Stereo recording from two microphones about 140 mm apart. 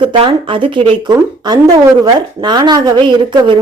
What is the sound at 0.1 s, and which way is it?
A woman's voice, 35° right (ahead or behind).